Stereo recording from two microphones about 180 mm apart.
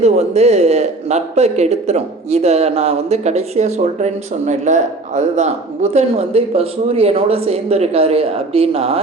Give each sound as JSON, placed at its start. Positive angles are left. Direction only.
{"t": 0.0, "sound": "a man's voice", "side_deg": -35}